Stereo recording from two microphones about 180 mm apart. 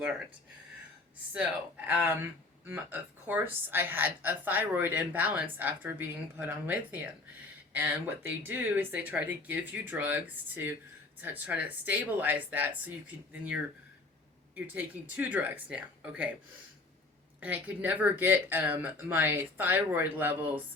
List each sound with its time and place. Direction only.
1.3 s a woman's voice: 10° right (ahead or behind)
17.4 s a woman's voice: 10° right (ahead or behind)